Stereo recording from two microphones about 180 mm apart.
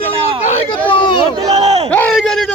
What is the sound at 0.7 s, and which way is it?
Speech, 30° left (ahead or behind).